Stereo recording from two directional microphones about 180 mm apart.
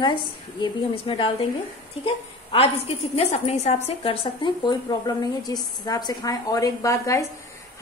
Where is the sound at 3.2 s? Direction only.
35° left (ahead or behind); by 7.3 s 15° left (ahead or behind).